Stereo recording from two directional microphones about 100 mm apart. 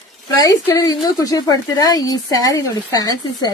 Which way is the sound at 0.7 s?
40° left (ahead or behind).